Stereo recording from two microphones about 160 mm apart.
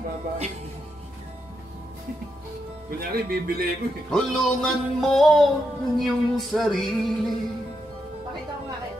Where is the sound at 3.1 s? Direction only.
75° right (ahead or behind).